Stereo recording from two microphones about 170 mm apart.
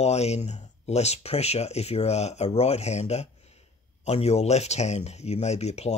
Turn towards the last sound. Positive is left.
turn(degrees=40)  # may be behind; listen again after turning